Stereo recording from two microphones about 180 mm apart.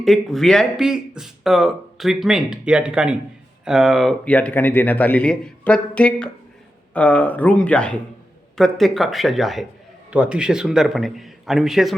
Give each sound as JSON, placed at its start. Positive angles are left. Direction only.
{"t": 0.0, "sound": "speech", "side_deg": 0}